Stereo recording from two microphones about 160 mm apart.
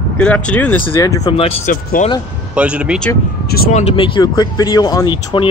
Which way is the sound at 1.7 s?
60° left (ahead or behind).